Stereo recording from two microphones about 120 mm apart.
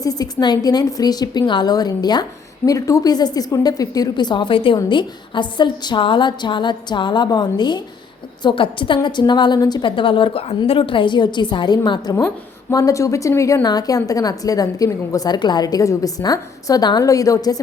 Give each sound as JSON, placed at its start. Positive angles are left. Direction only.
{"t": 0.0, "sound": "a woman's voice", "side_deg": 30}